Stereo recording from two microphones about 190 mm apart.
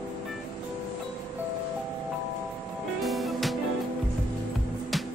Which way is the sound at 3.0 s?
Centre (ahead or behind).